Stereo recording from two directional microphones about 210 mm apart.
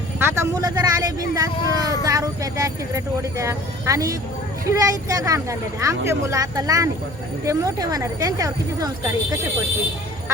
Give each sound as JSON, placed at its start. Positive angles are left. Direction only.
{"t": 0.2, "sound": "speech", "side_deg": -15}